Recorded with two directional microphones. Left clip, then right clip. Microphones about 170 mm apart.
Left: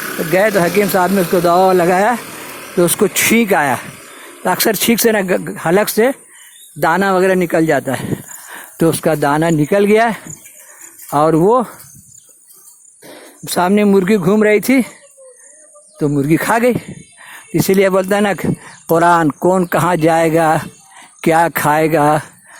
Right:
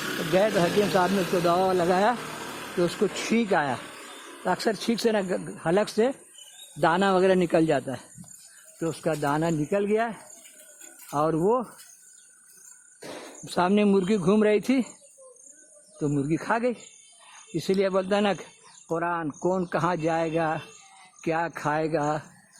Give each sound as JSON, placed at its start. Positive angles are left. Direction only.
{"t": 0.3, "sound": "speech", "side_deg": 30}
{"t": 2.7, "sound": "speech", "side_deg": 40}
{"t": 7.7, "sound": "speech", "side_deg": 35}
{"t": 13.0, "sound": "a sound", "side_deg": 0}
{"t": 13.4, "sound": "speech", "side_deg": 35}
{"t": 16.0, "sound": "speech", "side_deg": 35}
{"t": 18.9, "sound": "speech", "side_deg": 60}
{"t": 19.4, "sound": "speech", "side_deg": 35}